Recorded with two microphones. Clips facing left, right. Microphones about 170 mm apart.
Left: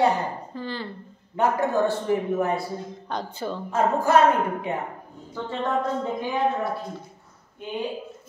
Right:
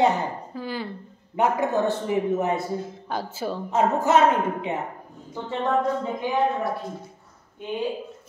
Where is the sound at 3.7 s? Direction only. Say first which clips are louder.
Even; 20° right (ahead or behind).